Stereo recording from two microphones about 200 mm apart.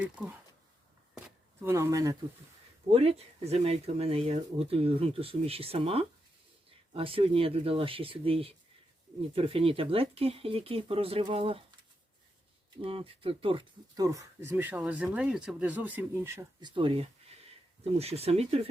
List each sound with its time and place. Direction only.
0.0 s speech: 5° right (ahead or behind)
1.6 s speech: 15° right (ahead or behind)
2.9 s speech: 30° right (ahead or behind)
12.8 s speech: 30° right (ahead or behind)